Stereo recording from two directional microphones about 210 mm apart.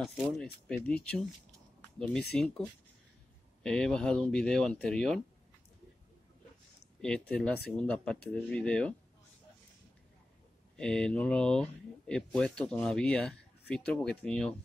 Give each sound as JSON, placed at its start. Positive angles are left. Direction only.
{"t": 0.0, "sound": "speech", "side_deg": 0}
{"t": 2.3, "sound": "speech", "side_deg": 5}
{"t": 3.6, "sound": "speech", "side_deg": 5}
{"t": 7.0, "sound": "speech", "side_deg": 5}
{"t": 10.8, "sound": "speech", "side_deg": 5}